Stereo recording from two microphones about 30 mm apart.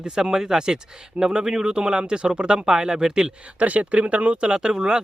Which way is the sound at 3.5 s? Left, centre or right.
Right.